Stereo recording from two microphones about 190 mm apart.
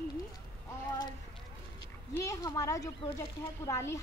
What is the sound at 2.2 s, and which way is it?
Speech, 15° left (ahead or behind).